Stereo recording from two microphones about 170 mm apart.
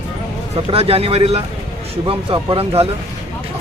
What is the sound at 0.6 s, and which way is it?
Speech, 35° right (ahead or behind).